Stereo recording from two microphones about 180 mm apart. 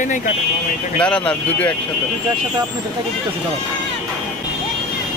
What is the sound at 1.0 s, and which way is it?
Speech, 5° left (ahead or behind).